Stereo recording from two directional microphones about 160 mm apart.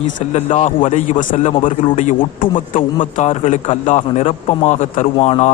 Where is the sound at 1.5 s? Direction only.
35° left (ahead or behind).